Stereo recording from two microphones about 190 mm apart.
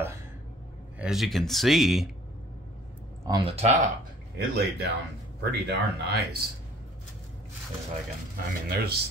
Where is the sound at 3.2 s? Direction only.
25° right (ahead or behind).